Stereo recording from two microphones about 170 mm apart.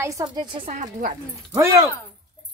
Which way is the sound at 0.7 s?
50° right (ahead or behind).